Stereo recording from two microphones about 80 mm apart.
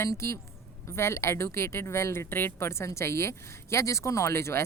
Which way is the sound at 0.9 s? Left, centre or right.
Left.